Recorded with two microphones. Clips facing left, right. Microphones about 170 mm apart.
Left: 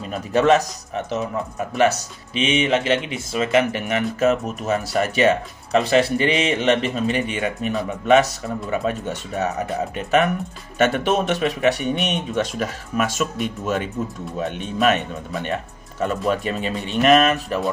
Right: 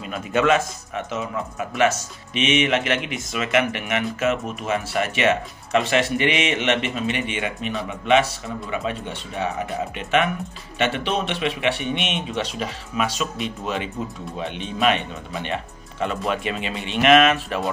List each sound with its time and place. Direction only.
0.0 s speech: 35° left (ahead or behind)